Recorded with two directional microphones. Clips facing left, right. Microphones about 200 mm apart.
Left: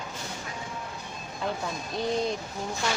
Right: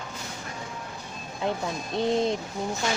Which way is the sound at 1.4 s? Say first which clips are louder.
Right 3 dB; 20° right (ahead or behind).